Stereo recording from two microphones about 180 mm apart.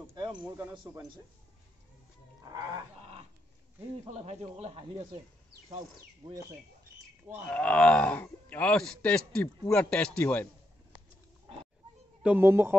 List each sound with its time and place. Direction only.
0.0 s a sound: 25° right (ahead or behind)
2.4 s speech: 20° right (ahead or behind)
3.0 s dog: 35° right (ahead or behind)
4.1 s speech: 35° right (ahead or behind)
7.4 s speech: 5° left (ahead or behind)
12.2 s speech: 10° right (ahead or behind)